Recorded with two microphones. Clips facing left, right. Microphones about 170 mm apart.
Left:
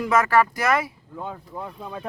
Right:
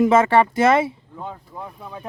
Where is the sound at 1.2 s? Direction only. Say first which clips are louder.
Left 3 dB; centre (ahead or behind).